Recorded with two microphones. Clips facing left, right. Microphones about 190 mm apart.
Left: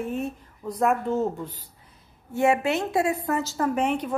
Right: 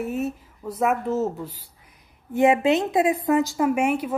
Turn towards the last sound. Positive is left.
turn(degrees=-10)  # may be behind; listen again after turning